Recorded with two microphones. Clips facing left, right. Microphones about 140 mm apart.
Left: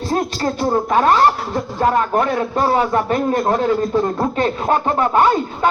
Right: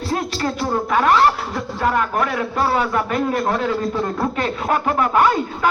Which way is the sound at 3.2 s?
45° left (ahead or behind).